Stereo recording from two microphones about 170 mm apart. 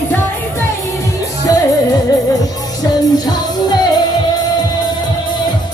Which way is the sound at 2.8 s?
25° left (ahead or behind).